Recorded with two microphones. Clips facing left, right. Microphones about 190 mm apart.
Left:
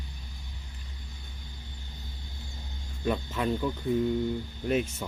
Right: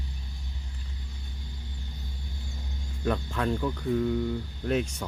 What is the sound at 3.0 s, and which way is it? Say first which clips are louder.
Speech: even; 15° left (ahead or behind).